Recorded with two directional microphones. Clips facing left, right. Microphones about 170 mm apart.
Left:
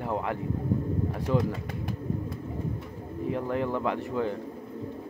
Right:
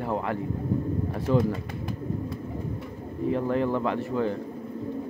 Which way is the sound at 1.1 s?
15° left (ahead or behind).